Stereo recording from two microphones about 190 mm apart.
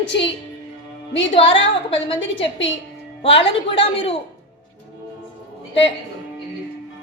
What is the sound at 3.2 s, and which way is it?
Speech, 30° left (ahead or behind).